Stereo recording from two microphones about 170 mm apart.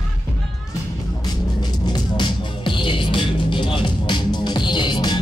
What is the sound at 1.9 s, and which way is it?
Music, 30° left (ahead or behind).